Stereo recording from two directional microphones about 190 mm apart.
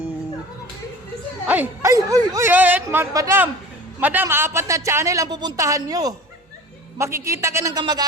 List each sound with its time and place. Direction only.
1.5 s a woman's voice: 10° right (ahead or behind)